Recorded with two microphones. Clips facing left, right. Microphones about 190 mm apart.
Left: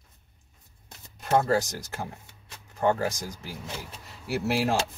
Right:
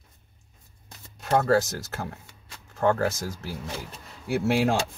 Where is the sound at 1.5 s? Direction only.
15° left (ahead or behind).